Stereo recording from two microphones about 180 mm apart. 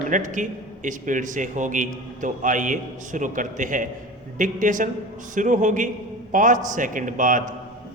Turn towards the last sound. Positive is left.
turn(degrees=-45)  # may be behind; listen again after turning